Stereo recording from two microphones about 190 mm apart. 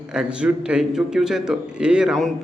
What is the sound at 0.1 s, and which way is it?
A man's voice, 5° right (ahead or behind).